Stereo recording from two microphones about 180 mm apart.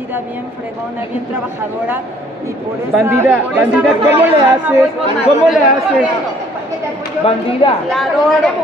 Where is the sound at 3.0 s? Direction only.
10° right (ahead or behind).